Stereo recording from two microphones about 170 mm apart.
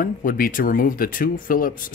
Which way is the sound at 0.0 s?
55° left (ahead or behind).